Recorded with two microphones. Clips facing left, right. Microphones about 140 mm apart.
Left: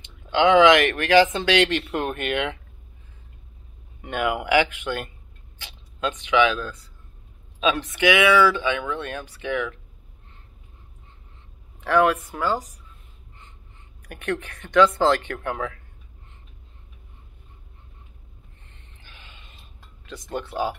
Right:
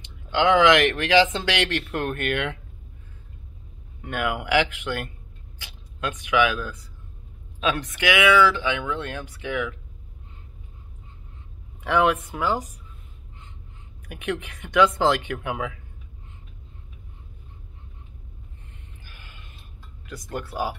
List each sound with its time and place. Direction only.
0.3 s speech: 15° left (ahead or behind)
4.0 s speech: centre (ahead or behind)
7.6 s speech: centre (ahead or behind)
8.6 s speech: 10° right (ahead or behind)
11.8 s speech: 15° right (ahead or behind)
14.0 s speech: 10° right (ahead or behind)
18.7 s a sound: 5° right (ahead or behind)
20.1 s speech: 5° right (ahead or behind)